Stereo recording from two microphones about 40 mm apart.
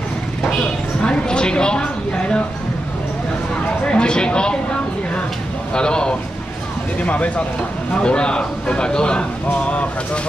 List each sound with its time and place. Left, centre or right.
1.0 s speech: left
3.6 s a sound: left
5.8 s speech: left
7.0 s speech: left